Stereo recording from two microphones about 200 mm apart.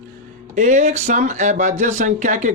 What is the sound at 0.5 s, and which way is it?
Speech, 40° right (ahead or behind).